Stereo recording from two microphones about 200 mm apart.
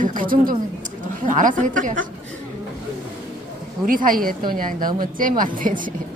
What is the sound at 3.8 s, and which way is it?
Speech, 45° right (ahead or behind).